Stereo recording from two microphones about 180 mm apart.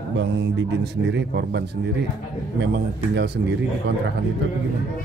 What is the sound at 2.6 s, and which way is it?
A man's voice, 70° right (ahead or behind).